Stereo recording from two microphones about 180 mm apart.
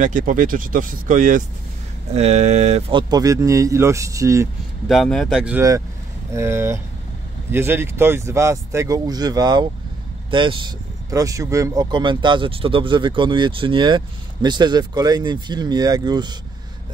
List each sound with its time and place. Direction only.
0.0 s speech: 45° right (ahead or behind)
2.9 s speech: 25° right (ahead or behind)
4.8 s speech: centre (ahead or behind)
6.3 s speech: 15° right (ahead or behind)